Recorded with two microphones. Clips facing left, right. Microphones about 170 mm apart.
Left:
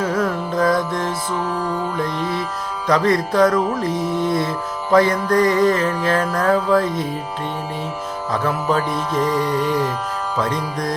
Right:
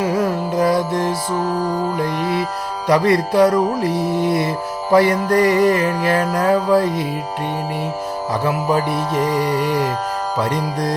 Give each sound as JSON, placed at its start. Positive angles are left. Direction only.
{"t": 0.0, "sound": "music", "side_deg": -15}
{"t": 1.4, "sound": "music", "side_deg": -40}
{"t": 2.2, "sound": "music", "side_deg": -70}
{"t": 2.8, "sound": "speech", "side_deg": -15}
{"t": 6.8, "sound": "music", "side_deg": -65}
{"t": 8.3, "sound": "speech", "side_deg": -10}
{"t": 10.3, "sound": "music", "side_deg": -15}